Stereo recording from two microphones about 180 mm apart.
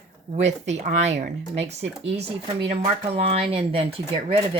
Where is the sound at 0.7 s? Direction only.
40° right (ahead or behind).